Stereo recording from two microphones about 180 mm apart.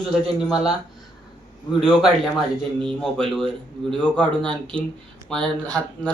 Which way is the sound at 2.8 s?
5° left (ahead or behind).